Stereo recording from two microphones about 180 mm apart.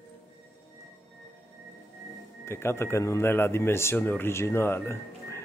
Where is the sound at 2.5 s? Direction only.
15° left (ahead or behind).